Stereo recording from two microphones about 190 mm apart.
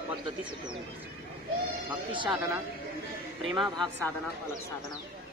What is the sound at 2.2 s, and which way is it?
Speech, centre (ahead or behind).